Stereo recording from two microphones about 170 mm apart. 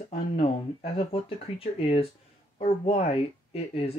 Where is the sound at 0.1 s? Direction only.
35° left (ahead or behind).